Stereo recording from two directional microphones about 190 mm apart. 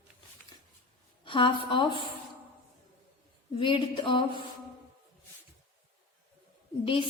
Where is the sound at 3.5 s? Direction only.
25° left (ahead or behind).